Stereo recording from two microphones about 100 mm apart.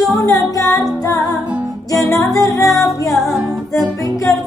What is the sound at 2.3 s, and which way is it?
Music, 35° left (ahead or behind).